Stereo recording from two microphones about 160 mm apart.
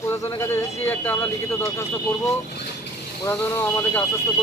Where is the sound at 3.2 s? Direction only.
15° left (ahead or behind).